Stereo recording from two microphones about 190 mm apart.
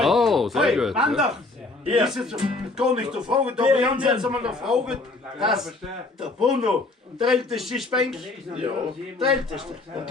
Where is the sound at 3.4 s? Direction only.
5° right (ahead or behind).